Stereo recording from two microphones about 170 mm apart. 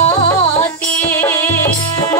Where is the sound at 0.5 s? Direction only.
15° left (ahead or behind).